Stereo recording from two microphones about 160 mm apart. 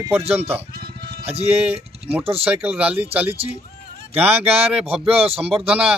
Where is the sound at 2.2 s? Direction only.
35° right (ahead or behind).